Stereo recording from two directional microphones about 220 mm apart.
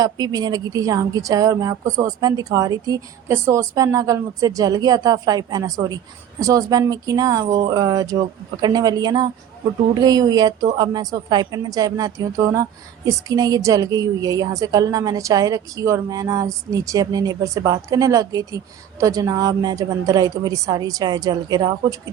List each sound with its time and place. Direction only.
0.0 s a woman's voice: 15° right (ahead or behind)